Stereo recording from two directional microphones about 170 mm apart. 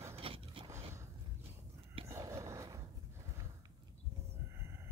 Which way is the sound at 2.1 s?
15° right (ahead or behind).